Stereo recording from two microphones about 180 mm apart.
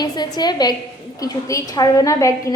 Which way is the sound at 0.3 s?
20° left (ahead or behind).